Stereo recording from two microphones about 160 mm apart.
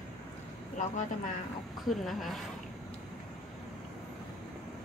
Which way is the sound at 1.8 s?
Centre (ahead or behind).